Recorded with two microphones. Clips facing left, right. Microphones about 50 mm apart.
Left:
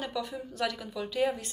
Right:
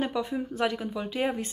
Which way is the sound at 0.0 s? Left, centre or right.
Right.